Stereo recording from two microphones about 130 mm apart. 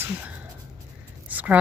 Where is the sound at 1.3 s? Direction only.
10° right (ahead or behind).